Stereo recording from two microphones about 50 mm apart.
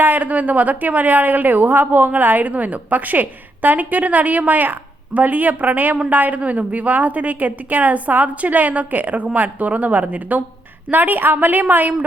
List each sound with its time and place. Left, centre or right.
0.0 s a woman's voice: right